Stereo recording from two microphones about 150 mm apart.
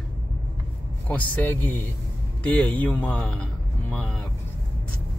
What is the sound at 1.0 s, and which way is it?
Speech, 10° left (ahead or behind).